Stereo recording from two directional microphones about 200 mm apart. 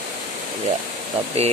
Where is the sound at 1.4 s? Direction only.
30° right (ahead or behind).